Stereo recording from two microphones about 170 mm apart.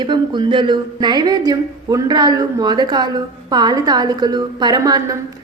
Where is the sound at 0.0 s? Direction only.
25° right (ahead or behind).